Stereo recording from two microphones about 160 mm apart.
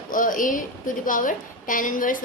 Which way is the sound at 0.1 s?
55° left (ahead or behind).